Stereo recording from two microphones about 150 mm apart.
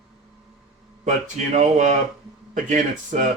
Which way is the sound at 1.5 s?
50° right (ahead or behind).